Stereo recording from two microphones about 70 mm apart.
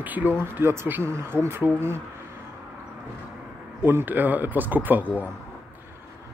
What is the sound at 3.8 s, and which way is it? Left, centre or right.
Speech, right.